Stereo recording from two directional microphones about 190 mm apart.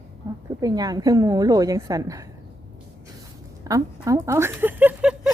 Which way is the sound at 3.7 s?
15° right (ahead or behind).